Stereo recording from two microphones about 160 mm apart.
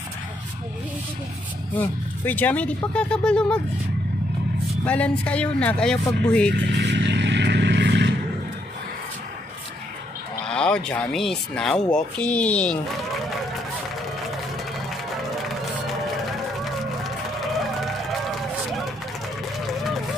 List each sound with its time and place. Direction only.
1.8 s speech: 10° left (ahead or behind)
4.8 s speech: 10° left (ahead or behind)
6.5 s vehicle: 90° right
10.4 s speech: 5° left (ahead or behind)